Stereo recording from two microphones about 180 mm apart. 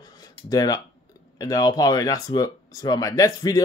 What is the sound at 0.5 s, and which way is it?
Speech, 20° left (ahead or behind).